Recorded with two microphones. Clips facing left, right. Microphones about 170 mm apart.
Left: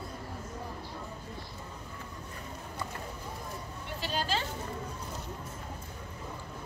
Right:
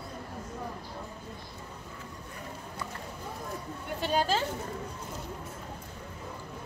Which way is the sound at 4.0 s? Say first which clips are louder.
Right 5 dB; 50° right (ahead or behind).